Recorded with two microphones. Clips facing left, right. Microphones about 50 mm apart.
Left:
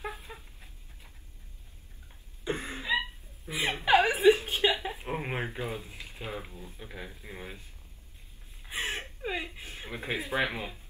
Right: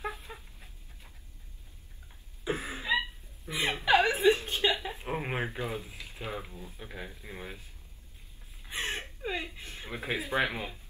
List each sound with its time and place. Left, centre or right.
0.0 s dog: centre
2.4 s a sound: centre
3.5 s speech: centre
3.8 s a woman's voice: centre
4.4 s chuckle: left
5.0 s speech: centre
8.6 s gasp: centre
9.2 s chuckle: centre
9.8 s speech: centre